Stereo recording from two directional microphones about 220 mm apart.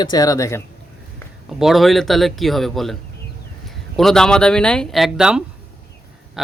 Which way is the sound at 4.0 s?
Centre (ahead or behind).